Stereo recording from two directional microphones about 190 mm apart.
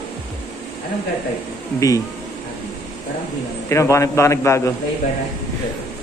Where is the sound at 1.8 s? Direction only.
15° left (ahead or behind).